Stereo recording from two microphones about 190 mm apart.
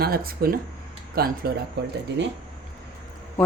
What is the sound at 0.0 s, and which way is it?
Speech, 50° right (ahead or behind).